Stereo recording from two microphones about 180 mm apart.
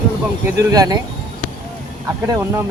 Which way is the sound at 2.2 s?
20° right (ahead or behind).